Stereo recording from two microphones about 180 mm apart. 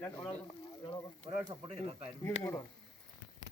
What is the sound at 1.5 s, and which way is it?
Speech, 35° right (ahead or behind).